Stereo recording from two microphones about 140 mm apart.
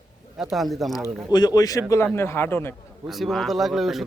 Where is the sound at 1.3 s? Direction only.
30° left (ahead or behind).